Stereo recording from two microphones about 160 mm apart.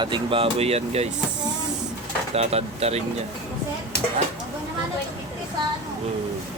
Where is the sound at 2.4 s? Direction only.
40° right (ahead or behind).